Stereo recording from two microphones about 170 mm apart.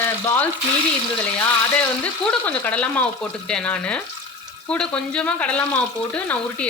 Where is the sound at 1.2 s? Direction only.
5° left (ahead or behind).